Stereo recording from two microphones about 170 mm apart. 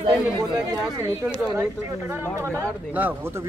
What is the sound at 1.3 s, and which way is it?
Speech, 15° right (ahead or behind).